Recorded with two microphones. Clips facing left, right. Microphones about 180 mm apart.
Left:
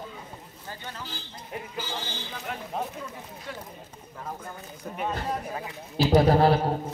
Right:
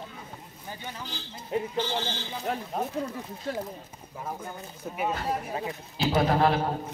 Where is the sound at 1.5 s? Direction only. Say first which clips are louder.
Right 9 dB; 25° right (ahead or behind).